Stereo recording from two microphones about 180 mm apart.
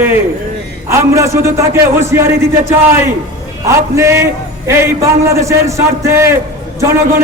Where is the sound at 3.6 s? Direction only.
15° right (ahead or behind).